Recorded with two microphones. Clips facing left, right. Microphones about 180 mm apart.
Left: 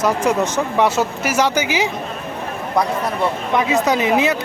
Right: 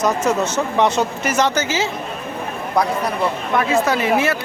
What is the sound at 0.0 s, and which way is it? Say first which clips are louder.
Speech: left 1 dB; 10° left (ahead or behind).